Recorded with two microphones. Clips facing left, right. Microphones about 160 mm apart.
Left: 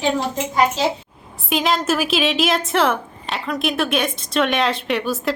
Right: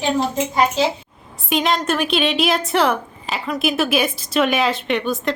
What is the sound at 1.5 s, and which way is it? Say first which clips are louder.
A woman's voice: even; centre (ahead or behind).